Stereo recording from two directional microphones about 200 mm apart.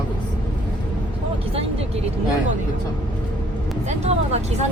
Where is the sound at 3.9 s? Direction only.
35° right (ahead or behind).